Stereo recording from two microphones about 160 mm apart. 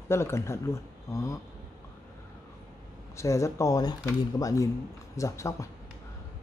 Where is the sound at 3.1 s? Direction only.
20° left (ahead or behind).